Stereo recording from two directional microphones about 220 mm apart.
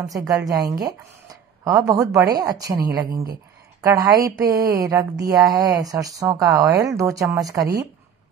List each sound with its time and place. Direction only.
0.5 s speech: 15° right (ahead or behind)